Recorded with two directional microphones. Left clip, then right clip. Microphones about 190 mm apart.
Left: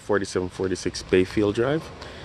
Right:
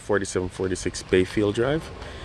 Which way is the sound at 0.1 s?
5° left (ahead or behind).